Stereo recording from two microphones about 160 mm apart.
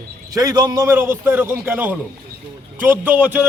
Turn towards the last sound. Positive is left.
turn(degrees=-10)  # may be behind; listen again after turning